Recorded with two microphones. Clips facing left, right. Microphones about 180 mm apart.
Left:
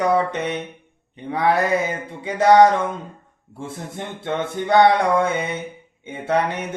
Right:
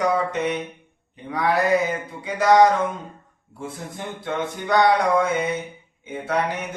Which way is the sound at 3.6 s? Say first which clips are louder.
Left 2 dB; 25° left (ahead or behind).